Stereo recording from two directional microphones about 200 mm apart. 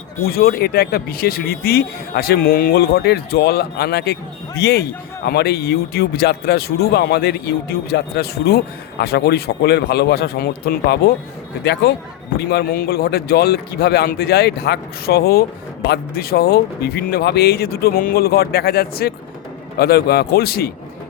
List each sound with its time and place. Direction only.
0.3 s a man's voice: 50° left (ahead or behind)